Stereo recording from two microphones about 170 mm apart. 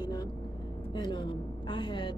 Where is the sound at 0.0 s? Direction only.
20° left (ahead or behind).